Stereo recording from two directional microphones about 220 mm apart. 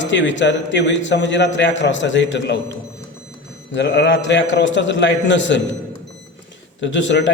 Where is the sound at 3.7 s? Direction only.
50° left (ahead or behind).